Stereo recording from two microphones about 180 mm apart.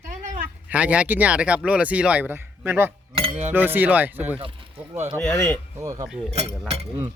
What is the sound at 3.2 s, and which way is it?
Cutlery, 35° right (ahead or behind).